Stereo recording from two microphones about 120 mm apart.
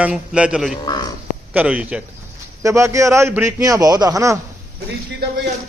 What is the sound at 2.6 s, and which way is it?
A man's voice, 25° right (ahead or behind).